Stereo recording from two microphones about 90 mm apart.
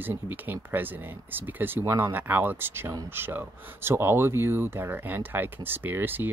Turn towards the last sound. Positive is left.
turn(degrees=-20)  # may be behind; listen again after turning